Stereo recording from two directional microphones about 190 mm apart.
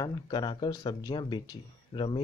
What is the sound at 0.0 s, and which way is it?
Speech, 25° left (ahead or behind).